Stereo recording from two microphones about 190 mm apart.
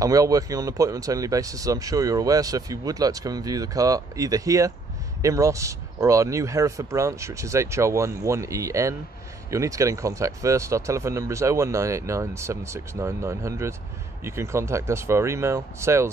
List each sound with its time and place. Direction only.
0.0 s a man's voice: 20° right (ahead or behind)